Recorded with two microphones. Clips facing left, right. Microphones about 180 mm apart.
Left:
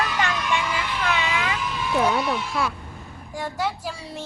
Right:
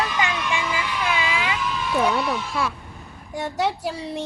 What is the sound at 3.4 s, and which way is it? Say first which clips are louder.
Speech: right 3 dB; 20° right (ahead or behind).